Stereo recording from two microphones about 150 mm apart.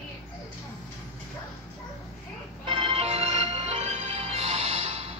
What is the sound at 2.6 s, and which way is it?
Music, 35° right (ahead or behind).